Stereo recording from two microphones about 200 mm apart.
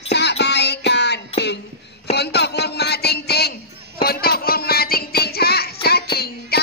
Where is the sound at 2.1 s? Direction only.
55° left (ahead or behind).